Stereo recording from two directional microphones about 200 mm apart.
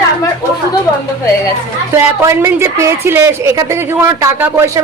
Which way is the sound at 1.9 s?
15° right (ahead or behind).